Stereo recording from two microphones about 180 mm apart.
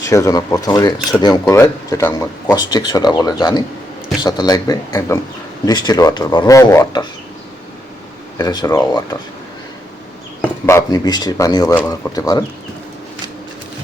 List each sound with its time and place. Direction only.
0.0 s speech: 20° left (ahead or behind)
8.4 s speech: 20° left (ahead or behind)
10.4 s speech: 15° left (ahead or behind)